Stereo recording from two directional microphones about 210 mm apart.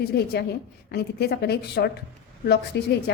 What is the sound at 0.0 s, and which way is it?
A woman's voice, 50° left (ahead or behind).